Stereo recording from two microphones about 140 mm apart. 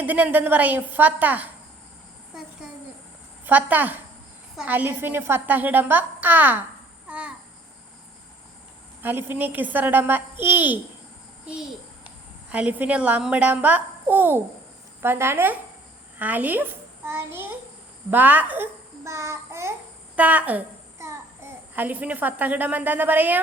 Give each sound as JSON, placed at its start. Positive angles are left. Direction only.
{"t": 0.0, "sound": "a woman's voice", "side_deg": -10}
{"t": 3.4, "sound": "a woman's voice", "side_deg": -10}
{"t": 7.1, "sound": "babbling", "side_deg": -10}
{"t": 9.0, "sound": "a woman's voice", "side_deg": -15}
{"t": 20.1, "sound": "a sound", "side_deg": -10}
{"t": 21.8, "sound": "a woman's voice", "side_deg": -10}